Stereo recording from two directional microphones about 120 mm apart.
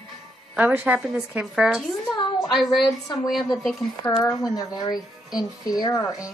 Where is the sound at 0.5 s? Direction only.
15° right (ahead or behind).